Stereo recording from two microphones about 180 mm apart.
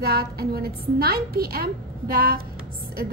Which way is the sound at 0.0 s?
60° right (ahead or behind).